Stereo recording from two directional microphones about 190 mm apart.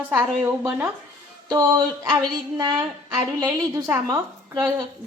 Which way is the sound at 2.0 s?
20° right (ahead or behind).